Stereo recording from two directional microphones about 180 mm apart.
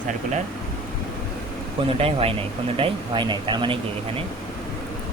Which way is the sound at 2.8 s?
25° right (ahead or behind).